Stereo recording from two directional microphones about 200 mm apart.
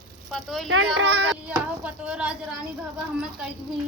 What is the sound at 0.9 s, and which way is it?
Speech, 60° right (ahead or behind).